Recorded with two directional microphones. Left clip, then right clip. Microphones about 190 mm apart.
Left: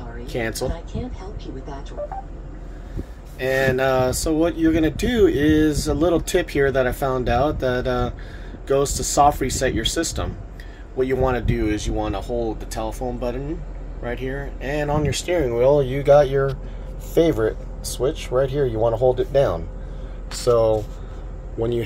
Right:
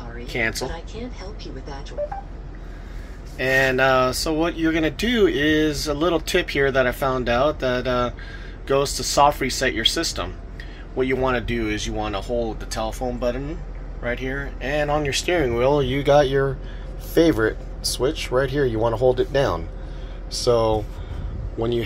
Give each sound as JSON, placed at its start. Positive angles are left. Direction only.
{"t": 0.3, "sound": "speech", "side_deg": 35}
{"t": 3.3, "sound": "speech", "side_deg": 15}